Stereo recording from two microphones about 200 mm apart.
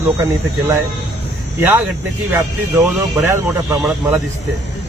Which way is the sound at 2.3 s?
10° right (ahead or behind).